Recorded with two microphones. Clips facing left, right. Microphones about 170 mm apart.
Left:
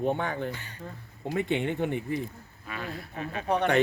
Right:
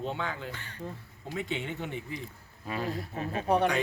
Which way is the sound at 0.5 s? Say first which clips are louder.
Left 3 dB; 10° left (ahead or behind).